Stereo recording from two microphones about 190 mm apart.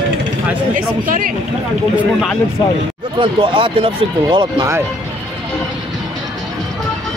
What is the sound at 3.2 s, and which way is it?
Speech, 25° right (ahead or behind).